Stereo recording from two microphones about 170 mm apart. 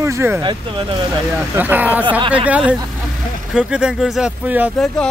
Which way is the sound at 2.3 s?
10° right (ahead or behind).